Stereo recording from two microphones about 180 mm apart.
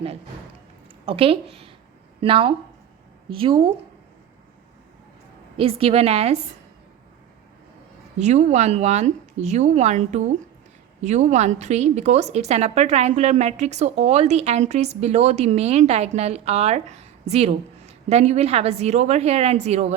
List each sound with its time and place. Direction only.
1.0 s a woman's voice: 30° right (ahead or behind)
5.5 s a woman's voice: 30° right (ahead or behind)
8.2 s a woman's voice: 40° right (ahead or behind)